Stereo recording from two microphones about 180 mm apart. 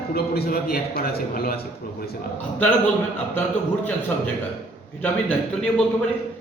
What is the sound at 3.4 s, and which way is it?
A man's voice, 10° left (ahead or behind).